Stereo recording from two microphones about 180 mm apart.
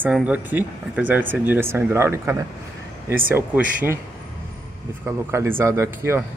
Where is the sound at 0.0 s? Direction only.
5° right (ahead or behind).